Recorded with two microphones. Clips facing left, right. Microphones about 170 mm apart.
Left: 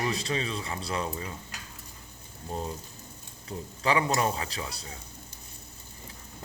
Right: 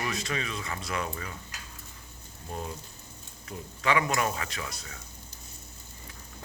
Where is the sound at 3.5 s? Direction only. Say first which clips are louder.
Left 1 dB; 30° left (ahead or behind).